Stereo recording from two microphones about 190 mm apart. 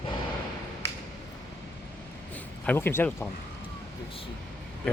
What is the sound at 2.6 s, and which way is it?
Speech, 10° left (ahead or behind).